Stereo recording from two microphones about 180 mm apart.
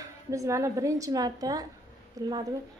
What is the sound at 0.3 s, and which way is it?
A woman's voice, 15° right (ahead or behind).